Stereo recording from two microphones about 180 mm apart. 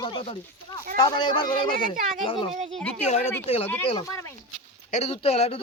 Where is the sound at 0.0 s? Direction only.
25° left (ahead or behind).